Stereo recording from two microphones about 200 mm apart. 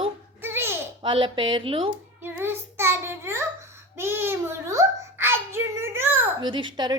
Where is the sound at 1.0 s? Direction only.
25° right (ahead or behind).